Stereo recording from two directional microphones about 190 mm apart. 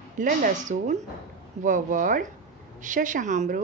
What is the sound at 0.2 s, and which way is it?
A woman's voice, 40° right (ahead or behind).